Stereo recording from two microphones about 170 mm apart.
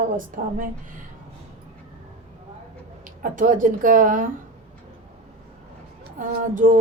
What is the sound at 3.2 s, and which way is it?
Speech, 50° right (ahead or behind).